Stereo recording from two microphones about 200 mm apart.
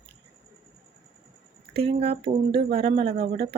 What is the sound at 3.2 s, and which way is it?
Speech, 50° right (ahead or behind).